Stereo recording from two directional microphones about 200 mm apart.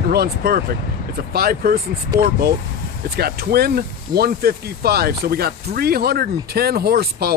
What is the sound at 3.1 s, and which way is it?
Speech, 50° right (ahead or behind).